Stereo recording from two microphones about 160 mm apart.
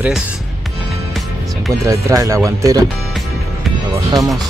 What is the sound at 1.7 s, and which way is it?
Speech, 20° right (ahead or behind).